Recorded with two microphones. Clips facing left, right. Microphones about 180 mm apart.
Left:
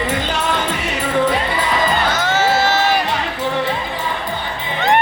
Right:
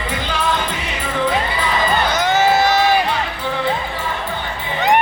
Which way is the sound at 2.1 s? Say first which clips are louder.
Right 2 dB; 15° right (ahead or behind).